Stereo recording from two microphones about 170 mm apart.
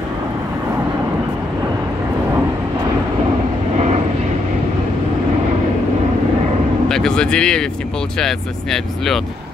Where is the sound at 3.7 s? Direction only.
40° right (ahead or behind).